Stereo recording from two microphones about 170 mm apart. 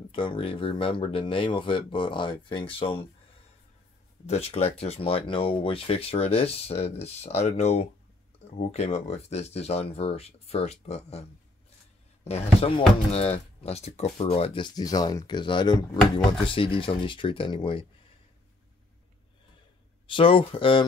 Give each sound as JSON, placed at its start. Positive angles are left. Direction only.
{"t": 0.1, "sound": "speech", "side_deg": 30}
{"t": 4.3, "sound": "speech", "side_deg": 40}
{"t": 12.3, "sound": "speech", "side_deg": 35}
{"t": 20.1, "sound": "speech", "side_deg": 30}